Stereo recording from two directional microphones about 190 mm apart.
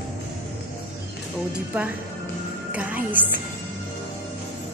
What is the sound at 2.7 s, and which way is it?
Speech, 10° right (ahead or behind).